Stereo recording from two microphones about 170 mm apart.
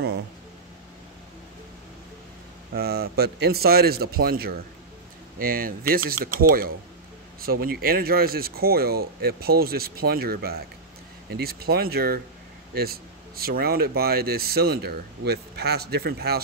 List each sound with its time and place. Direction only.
2.7 s speech: 65° right (ahead or behind)